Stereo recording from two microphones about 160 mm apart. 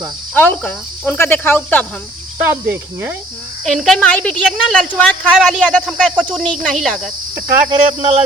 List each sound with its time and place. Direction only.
0.3 s speech: 5° left (ahead or behind)
2.4 s speech: 15° right (ahead or behind)
3.6 s a woman's voice: centre (ahead or behind)
7.3 s speech: 25° right (ahead or behind)